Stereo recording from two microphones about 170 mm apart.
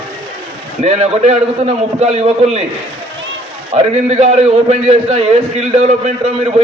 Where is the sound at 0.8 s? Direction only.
40° right (ahead or behind).